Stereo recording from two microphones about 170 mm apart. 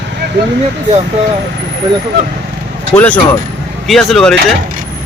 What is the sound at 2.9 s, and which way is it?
Speech, 10° left (ahead or behind).